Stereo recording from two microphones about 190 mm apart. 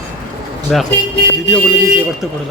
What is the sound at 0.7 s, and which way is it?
Speech, centre (ahead or behind).